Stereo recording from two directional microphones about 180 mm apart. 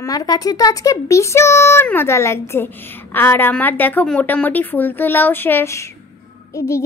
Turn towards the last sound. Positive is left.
turn(degrees=15)  # may be behind; listen again after turning